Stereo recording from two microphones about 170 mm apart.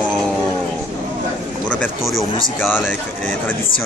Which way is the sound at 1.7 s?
5° left (ahead or behind).